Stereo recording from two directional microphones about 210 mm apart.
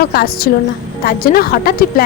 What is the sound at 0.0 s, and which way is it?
A woman's voice, 45° left (ahead or behind).